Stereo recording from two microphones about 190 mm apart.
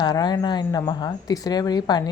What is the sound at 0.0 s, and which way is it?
A woman's voice, 20° left (ahead or behind).